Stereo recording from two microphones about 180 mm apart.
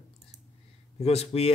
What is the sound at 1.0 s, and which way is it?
Speech, 35° left (ahead or behind).